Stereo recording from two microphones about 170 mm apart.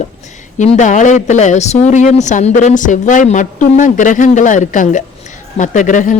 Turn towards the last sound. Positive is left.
turn(degrees=50)  # may be behind; listen again after turning